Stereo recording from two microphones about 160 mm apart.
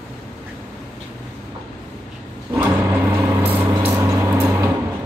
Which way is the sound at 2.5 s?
15° right (ahead or behind).